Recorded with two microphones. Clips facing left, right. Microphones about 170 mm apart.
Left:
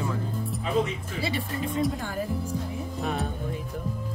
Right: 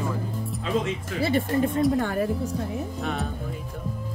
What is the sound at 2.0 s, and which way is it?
Speech, 65° right (ahead or behind).